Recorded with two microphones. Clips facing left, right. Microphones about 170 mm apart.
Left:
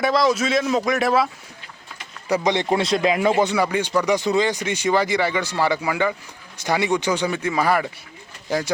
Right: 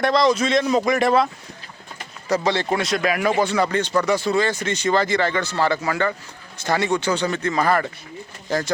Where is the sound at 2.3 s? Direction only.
15° left (ahead or behind).